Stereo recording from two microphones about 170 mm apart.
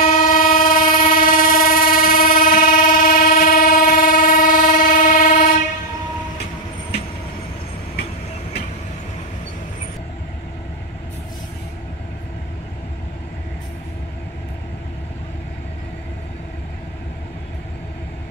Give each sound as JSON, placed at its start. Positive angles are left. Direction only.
{"t": 0.0, "sound": "train", "side_deg": 50}